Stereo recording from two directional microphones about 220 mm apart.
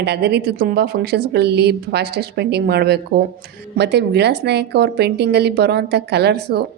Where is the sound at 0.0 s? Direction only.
50° right (ahead or behind).